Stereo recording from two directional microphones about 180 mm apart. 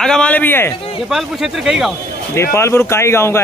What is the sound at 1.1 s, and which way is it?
Speech, centre (ahead or behind).